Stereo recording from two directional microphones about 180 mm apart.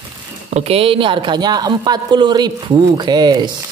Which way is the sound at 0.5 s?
35° right (ahead or behind).